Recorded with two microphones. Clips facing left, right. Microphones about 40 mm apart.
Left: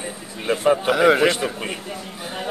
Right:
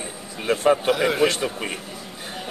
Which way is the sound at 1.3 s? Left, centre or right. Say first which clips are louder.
Left 3 dB; centre.